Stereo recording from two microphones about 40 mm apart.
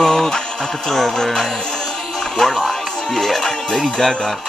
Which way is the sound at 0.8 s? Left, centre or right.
Centre.